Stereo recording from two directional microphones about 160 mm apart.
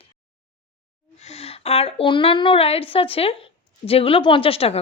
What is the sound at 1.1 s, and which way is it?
Speech, 40° left (ahead or behind).